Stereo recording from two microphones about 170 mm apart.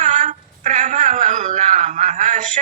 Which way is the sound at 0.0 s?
45° right (ahead or behind).